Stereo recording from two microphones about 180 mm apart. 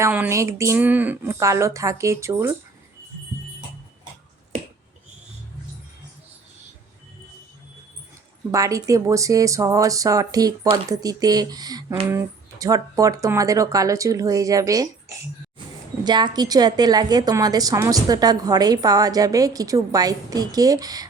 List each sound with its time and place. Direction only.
0.0 s speech: 10° right (ahead or behind)
8.5 s a woman's voice: 20° right (ahead or behind)
16.0 s a woman's voice: 25° right (ahead or behind)